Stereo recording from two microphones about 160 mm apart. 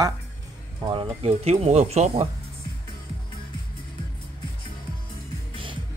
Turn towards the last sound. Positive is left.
turn(degrees=-30)  # may be behind; listen again after turning